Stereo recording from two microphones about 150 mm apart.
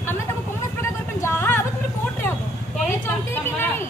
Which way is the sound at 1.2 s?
15° left (ahead or behind).